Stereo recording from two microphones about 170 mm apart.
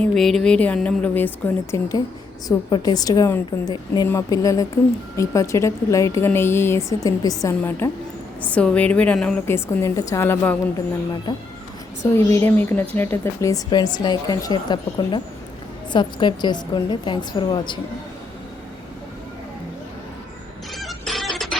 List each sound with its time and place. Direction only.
0.0 s a woman's voice: centre (ahead or behind)
12.1 s a woman's voice: 15° left (ahead or behind)
20.7 s music: centre (ahead or behind)